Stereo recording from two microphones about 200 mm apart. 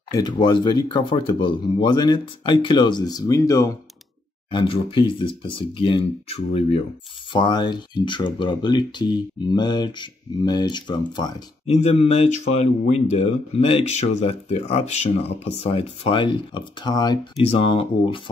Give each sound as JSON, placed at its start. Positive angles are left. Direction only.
{"t": 0.1, "sound": "speech", "side_deg": 20}
{"t": 11.7, "sound": "speech", "side_deg": 30}